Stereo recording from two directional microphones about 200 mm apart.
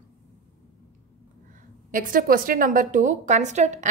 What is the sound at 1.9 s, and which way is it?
A woman's voice, 40° right (ahead or behind).